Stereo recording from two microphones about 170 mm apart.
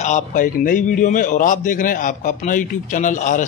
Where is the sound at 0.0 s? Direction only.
45° left (ahead or behind).